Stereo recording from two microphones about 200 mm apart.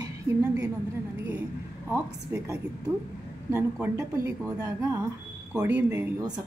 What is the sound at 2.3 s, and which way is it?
Speech, 10° right (ahead or behind).